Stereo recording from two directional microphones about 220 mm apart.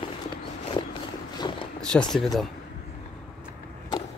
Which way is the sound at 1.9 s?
5° left (ahead or behind).